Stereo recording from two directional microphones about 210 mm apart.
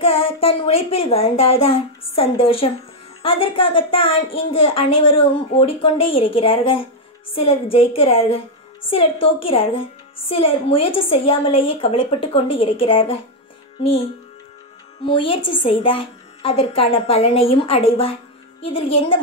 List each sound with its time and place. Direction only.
0.0 s a woman's voice: 25° left (ahead or behind)
15.0 s a woman's voice: 25° left (ahead or behind)